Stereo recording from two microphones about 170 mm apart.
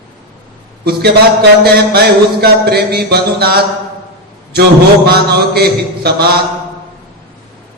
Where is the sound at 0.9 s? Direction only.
70° right (ahead or behind).